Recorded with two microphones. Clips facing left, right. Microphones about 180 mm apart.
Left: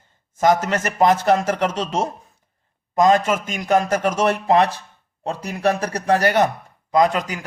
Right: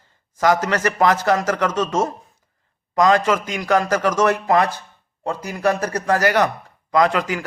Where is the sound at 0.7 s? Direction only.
25° left (ahead or behind).